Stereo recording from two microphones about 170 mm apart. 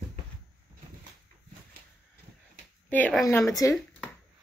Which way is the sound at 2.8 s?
10° left (ahead or behind).